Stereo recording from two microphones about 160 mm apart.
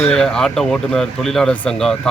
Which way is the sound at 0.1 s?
5° left (ahead or behind).